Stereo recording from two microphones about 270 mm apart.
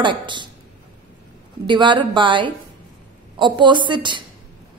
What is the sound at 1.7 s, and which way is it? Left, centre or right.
A woman's voice, centre.